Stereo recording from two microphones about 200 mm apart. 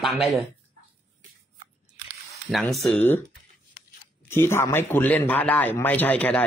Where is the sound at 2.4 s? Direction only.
Centre (ahead or behind).